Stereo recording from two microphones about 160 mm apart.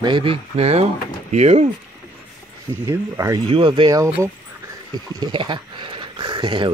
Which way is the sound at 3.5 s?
30° right (ahead or behind).